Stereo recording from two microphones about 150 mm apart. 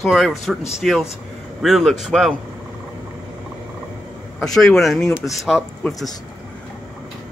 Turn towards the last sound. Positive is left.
turn(degrees=0)  # may be behind; listen again after turning